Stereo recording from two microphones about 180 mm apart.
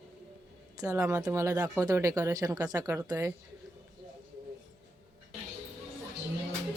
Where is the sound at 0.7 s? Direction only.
15° right (ahead or behind).